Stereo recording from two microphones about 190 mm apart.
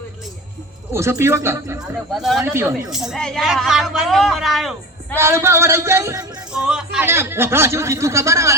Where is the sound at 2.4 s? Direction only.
15° right (ahead or behind).